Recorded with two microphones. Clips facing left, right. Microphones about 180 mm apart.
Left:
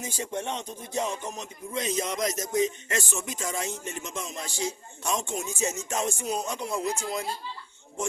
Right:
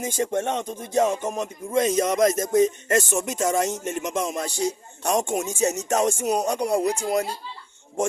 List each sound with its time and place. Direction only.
0.0 s music: 50° right (ahead or behind)
5.3 s speech: 60° right (ahead or behind)
5.6 s speech: 75° right (ahead or behind)